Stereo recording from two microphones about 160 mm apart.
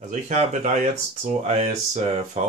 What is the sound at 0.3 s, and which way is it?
Speech, 50° right (ahead or behind).